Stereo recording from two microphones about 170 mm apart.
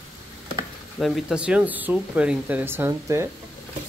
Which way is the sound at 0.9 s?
Centre (ahead or behind).